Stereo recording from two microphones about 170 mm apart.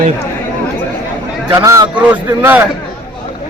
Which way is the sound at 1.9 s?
10° right (ahead or behind).